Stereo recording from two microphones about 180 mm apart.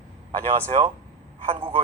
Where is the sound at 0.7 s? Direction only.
40° right (ahead or behind).